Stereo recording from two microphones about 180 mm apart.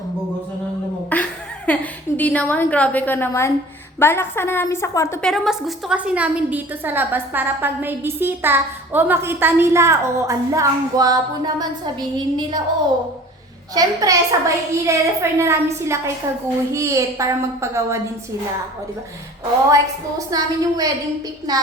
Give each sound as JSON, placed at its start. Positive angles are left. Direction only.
{"t": 1.1, "sound": "a woman's voice", "side_deg": 10}
{"t": 5.2, "sound": "a woman's voice", "side_deg": 0}
{"t": 13.7, "sound": "a woman's voice", "side_deg": -20}
{"t": 19.7, "sound": "a woman's voice", "side_deg": -20}